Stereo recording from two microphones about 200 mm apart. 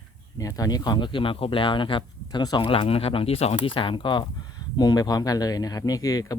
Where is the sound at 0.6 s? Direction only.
20° left (ahead or behind).